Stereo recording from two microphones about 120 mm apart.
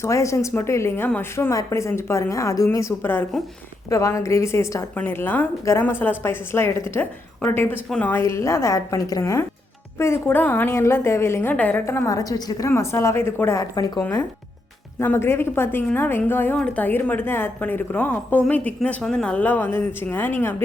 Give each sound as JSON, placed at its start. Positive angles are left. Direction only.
{"t": 0.0, "sound": "a woman's voice", "side_deg": 25}
{"t": 8.1, "sound": "a woman's voice", "side_deg": 20}
{"t": 14.0, "sound": "a woman's voice", "side_deg": 20}